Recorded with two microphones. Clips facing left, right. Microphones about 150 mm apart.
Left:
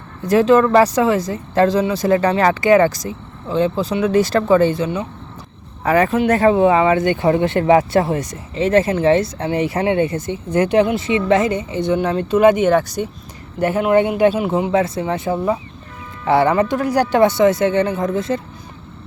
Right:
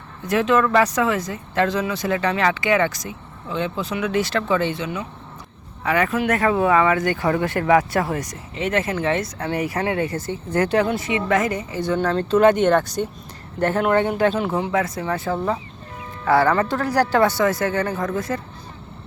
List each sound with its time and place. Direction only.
0.3 s speech: 35° left (ahead or behind)
11.9 s speech: 10° left (ahead or behind)